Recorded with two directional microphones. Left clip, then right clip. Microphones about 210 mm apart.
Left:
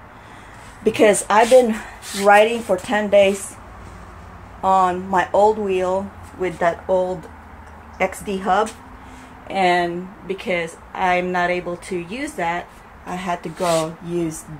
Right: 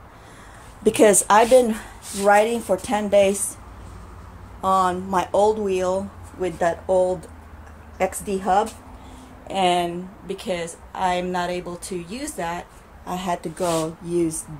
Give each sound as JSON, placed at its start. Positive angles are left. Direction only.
{"t": 0.8, "sound": "a woman's voice", "side_deg": -20}
{"t": 4.6, "sound": "a woman's voice", "side_deg": -10}
{"t": 13.1, "sound": "a woman's voice", "side_deg": -15}